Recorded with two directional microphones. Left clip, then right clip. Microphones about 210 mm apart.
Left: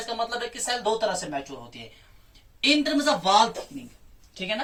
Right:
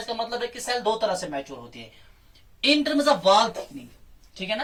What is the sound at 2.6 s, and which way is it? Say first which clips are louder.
Speech: right 1 dB; 20° left (ahead or behind).